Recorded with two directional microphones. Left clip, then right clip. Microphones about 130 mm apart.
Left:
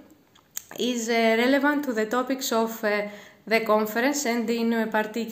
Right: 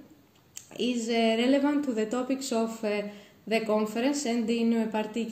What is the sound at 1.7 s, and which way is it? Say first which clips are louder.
Speech: left 3 dB; 50° left (ahead or behind).